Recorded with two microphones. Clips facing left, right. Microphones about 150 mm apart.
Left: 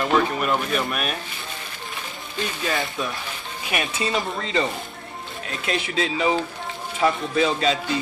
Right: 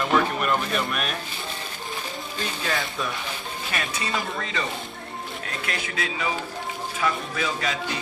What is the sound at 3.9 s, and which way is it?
Speech, 25° left (ahead or behind).